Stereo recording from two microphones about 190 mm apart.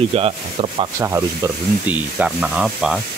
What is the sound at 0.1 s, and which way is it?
Rub, 30° right (ahead or behind).